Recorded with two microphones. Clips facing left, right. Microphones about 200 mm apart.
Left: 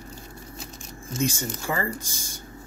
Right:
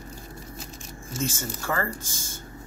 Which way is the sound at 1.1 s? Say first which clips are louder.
Left 3 dB; 15° left (ahead or behind).